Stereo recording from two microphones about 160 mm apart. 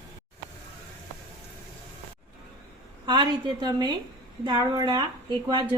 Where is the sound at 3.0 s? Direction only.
30° right (ahead or behind).